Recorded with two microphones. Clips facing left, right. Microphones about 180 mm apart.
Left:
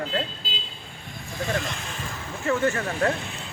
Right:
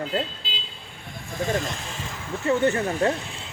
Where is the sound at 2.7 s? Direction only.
25° right (ahead or behind).